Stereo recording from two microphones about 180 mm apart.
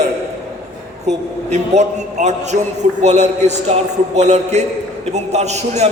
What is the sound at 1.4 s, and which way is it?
A man's voice, 40° right (ahead or behind).